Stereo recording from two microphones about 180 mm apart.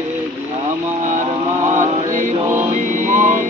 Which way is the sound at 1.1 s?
40° right (ahead or behind).